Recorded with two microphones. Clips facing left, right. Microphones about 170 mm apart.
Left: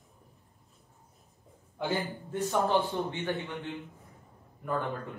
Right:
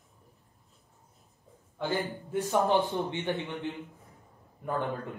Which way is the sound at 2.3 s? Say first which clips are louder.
Right 2 dB; 15° right (ahead or behind).